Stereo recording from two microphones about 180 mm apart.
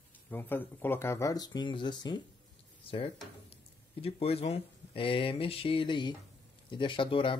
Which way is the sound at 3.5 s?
30° left (ahead or behind).